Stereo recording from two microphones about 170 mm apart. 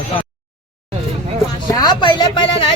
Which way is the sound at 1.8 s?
25° left (ahead or behind).